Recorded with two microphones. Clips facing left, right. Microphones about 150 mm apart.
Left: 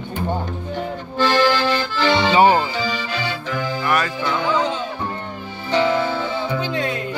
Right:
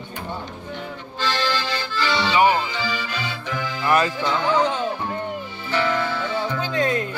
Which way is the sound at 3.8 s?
25° right (ahead or behind).